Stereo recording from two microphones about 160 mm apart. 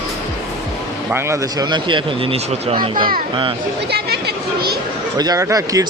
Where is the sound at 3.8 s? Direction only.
90° right.